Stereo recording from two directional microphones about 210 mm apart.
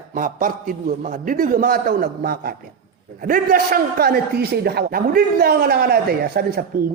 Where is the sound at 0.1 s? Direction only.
40° right (ahead or behind).